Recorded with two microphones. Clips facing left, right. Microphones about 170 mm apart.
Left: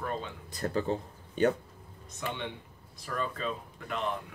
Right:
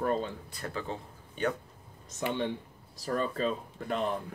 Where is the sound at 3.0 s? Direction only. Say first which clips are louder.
Right 4 dB; 40° right (ahead or behind).